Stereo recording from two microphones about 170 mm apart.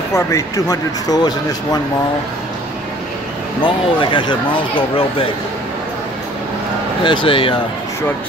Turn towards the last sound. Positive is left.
turn(degrees=30)  # may be behind; listen again after turning